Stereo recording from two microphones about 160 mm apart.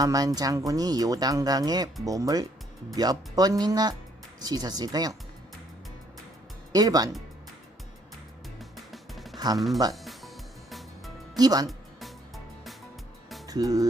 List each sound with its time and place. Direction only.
0.0 s speech: 20° right (ahead or behind)
6.7 s speech: 25° right (ahead or behind)
8.7 s music: centre (ahead or behind)
9.6 s speech: centre (ahead or behind)
9.9 s music: centre (ahead or behind)
11.3 s speech: 25° right (ahead or behind)
13.5 s speech: 25° right (ahead or behind)